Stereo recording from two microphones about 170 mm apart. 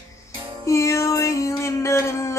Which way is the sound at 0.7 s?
15° left (ahead or behind).